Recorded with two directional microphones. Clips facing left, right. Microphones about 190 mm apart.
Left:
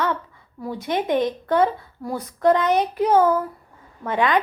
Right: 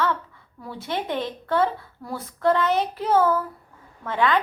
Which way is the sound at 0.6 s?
15° left (ahead or behind).